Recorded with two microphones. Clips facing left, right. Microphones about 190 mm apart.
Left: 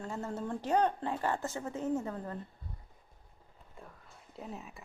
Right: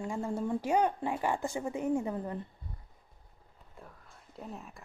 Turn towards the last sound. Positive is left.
turn(degrees=0)  # may be behind; listen again after turning